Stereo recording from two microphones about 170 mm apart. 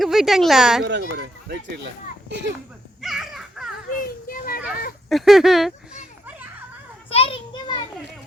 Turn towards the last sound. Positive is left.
turn(degrees=30)  # may be behind; listen again after turning